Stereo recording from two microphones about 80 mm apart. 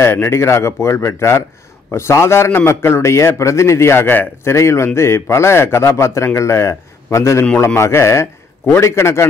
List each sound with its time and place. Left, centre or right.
0.0 s a man's voice: left